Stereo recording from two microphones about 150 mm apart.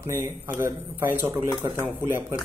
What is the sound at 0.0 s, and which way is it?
Speech, 15° right (ahead or behind).